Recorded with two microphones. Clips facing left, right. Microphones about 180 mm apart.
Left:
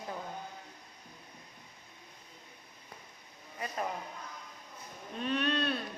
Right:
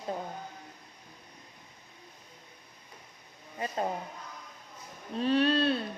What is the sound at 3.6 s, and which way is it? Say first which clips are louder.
Speech: right 4 dB; 30° right (ahead or behind).